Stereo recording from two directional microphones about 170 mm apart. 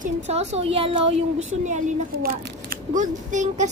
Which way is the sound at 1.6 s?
45° right (ahead or behind).